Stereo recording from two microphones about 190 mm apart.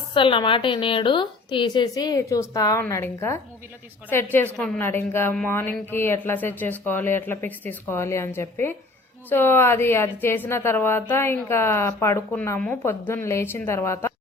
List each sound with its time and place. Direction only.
0.1 s a woman's voice: 25° left (ahead or behind)